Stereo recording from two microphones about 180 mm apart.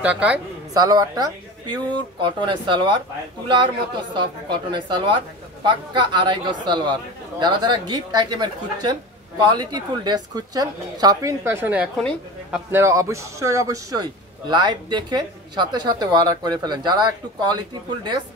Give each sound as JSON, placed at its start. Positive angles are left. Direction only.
{"t": 0.0, "sound": "speech", "side_deg": -5}
{"t": 0.7, "sound": "speech", "side_deg": -20}